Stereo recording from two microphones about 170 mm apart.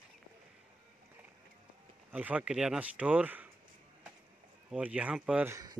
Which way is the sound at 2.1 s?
10° right (ahead or behind).